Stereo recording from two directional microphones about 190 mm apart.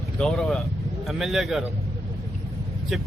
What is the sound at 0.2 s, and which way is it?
Speech, 5° left (ahead or behind).